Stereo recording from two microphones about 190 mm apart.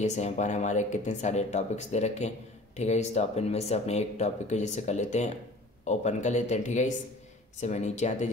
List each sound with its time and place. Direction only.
0.0 s speech: 35° left (ahead or behind)